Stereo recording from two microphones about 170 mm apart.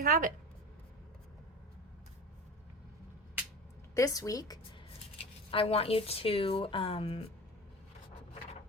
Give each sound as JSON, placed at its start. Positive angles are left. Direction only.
{"t": 0.0, "sound": "speech", "side_deg": -50}
{"t": 3.9, "sound": "a woman's voice", "side_deg": 20}
{"t": 5.1, "sound": "speech", "side_deg": 35}